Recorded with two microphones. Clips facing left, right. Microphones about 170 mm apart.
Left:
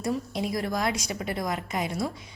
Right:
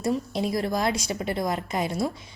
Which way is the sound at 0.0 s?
30° right (ahead or behind).